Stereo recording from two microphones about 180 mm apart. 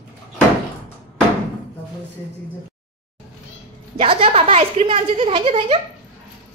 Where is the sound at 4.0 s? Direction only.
30° right (ahead or behind).